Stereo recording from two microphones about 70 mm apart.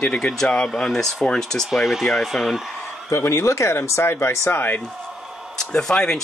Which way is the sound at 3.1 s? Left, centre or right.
Left.